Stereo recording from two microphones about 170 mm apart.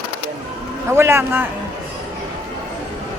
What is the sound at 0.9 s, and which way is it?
Speech, 15° right (ahead or behind).